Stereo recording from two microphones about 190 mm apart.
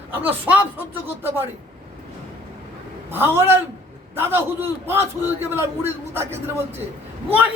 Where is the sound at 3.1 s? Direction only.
10° right (ahead or behind).